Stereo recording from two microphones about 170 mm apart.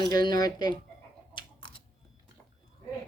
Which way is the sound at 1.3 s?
30° left (ahead or behind).